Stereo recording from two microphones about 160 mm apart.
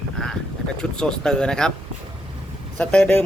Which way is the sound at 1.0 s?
5° left (ahead or behind).